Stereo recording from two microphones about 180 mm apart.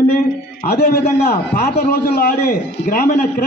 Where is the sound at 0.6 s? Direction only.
55° left (ahead or behind).